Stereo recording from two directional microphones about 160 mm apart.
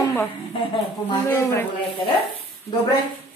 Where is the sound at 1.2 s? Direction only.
15° left (ahead or behind).